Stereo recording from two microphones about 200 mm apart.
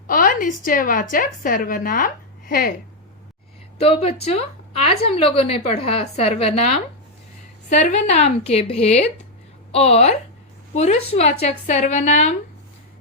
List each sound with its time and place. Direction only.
0.1 s speech: 45° left (ahead or behind)
3.8 s a woman's voice: 30° left (ahead or behind)